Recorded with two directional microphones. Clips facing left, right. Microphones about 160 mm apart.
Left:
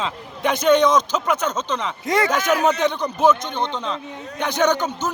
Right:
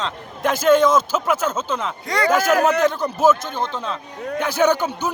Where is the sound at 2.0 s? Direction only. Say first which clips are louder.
Left 2 dB; 20° left (ahead or behind).